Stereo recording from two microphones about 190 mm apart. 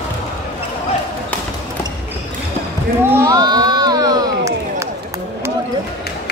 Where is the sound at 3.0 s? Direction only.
15° right (ahead or behind).